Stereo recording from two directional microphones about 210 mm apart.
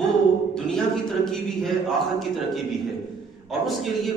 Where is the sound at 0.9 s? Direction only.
Centre (ahead or behind).